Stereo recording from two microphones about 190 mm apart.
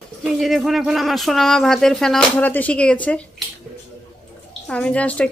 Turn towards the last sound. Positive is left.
turn(degrees=5)  # may be behind; listen again after turning